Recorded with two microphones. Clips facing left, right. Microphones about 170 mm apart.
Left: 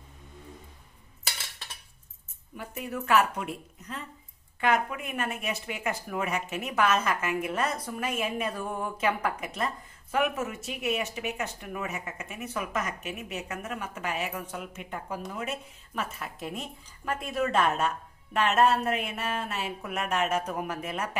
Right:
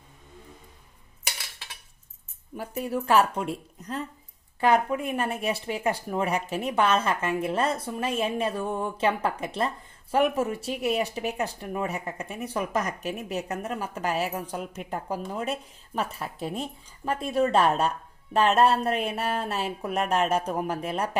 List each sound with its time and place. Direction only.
2.5 s speech: 35° right (ahead or behind)